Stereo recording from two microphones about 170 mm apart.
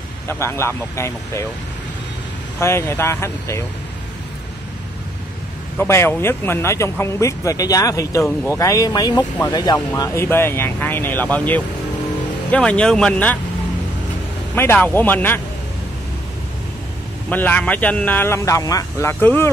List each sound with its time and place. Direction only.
0.3 s speech: 15° left (ahead or behind)
2.6 s speech: 15° left (ahead or behind)
5.8 s speech: 15° left (ahead or behind)
14.5 s speech: 10° left (ahead or behind)
17.3 s speech: 10° left (ahead or behind)